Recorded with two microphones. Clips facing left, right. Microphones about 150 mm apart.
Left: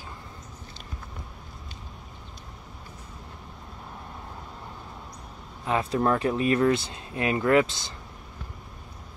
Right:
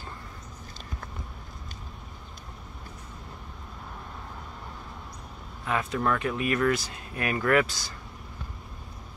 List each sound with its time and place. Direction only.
5.7 s speech: 30° left (ahead or behind)